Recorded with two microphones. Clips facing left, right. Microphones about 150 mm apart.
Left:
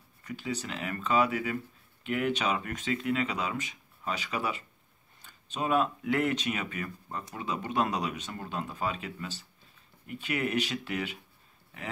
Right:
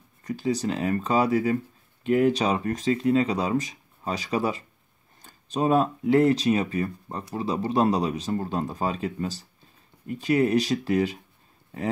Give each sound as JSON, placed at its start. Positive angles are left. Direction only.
{"t": 0.2, "sound": "speech", "side_deg": -40}